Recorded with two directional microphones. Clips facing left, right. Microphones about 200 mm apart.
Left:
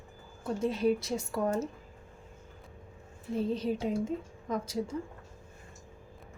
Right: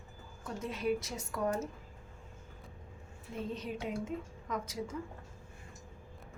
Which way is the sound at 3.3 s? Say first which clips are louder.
Left 8 dB; 35° left (ahead or behind).